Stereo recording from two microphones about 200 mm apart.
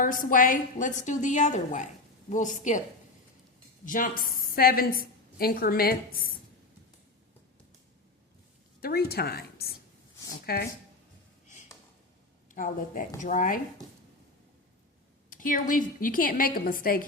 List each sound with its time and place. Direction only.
0.0 s a woman's voice: 45° left (ahead or behind)
3.8 s a woman's voice: 40° left (ahead or behind)
8.8 s a woman's voice: 50° left (ahead or behind)
12.5 s a woman's voice: 40° left (ahead or behind)
15.3 s a woman's voice: 40° left (ahead or behind)